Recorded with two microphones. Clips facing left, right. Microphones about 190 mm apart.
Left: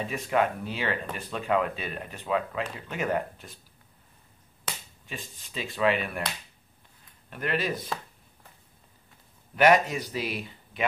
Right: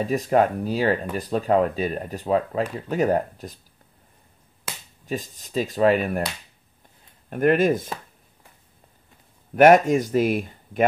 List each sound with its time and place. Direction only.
0.0 s speech: 40° right (ahead or behind)
5.0 s speech: 40° right (ahead or behind)
7.2 s speech: 50° right (ahead or behind)
9.6 s speech: 50° right (ahead or behind)